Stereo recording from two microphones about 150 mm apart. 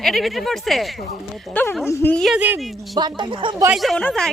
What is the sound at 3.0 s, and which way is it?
Speech, 30° right (ahead or behind).